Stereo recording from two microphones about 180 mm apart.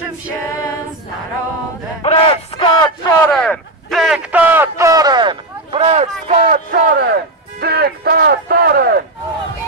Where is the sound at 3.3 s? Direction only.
Centre (ahead or behind); by 6.6 s 40° right (ahead or behind).